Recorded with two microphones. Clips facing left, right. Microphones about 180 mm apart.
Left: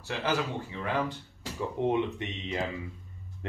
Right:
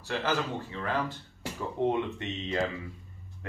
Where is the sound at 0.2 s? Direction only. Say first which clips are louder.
Left 3 dB; 10° left (ahead or behind).